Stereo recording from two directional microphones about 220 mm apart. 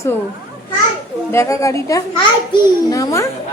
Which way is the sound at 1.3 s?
15° left (ahead or behind).